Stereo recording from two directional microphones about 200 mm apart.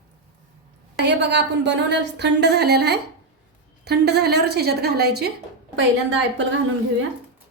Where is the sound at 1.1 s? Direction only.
60° right (ahead or behind).